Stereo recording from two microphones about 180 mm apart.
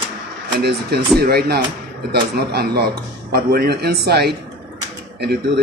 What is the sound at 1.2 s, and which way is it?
A man's voice, 60° right (ahead or behind).